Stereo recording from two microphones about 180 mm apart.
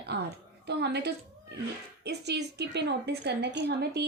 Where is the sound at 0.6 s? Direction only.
70° right (ahead or behind).